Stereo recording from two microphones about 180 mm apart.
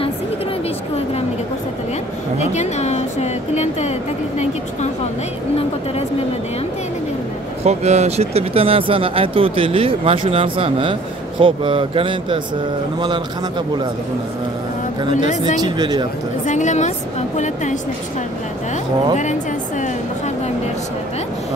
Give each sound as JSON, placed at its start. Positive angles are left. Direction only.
{"t": 2.3, "sound": "music", "side_deg": 40}
{"t": 7.6, "sound": "speech", "side_deg": -40}
{"t": 15.6, "sound": "speech", "side_deg": -25}
{"t": 16.4, "sound": "a woman's voice", "side_deg": 40}